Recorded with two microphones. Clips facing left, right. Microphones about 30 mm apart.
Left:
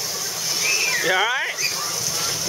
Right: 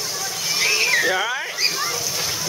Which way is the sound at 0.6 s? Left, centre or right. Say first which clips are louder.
Right 3 dB; right.